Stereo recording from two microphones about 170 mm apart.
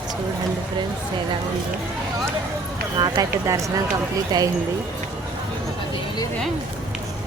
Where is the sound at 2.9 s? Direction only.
25° right (ahead or behind).